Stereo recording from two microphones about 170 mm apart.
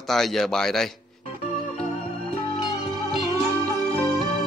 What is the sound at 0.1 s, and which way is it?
Speech, centre (ahead or behind).